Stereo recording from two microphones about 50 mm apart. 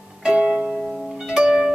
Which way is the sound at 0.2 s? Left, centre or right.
Centre.